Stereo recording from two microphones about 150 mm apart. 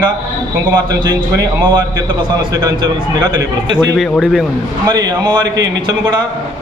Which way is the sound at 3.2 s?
25° right (ahead or behind).